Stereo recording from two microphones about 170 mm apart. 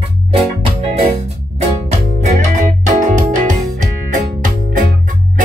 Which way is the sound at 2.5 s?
45° right (ahead or behind).